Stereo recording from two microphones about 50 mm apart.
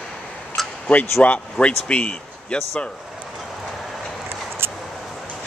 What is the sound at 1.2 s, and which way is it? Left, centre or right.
Speech, left.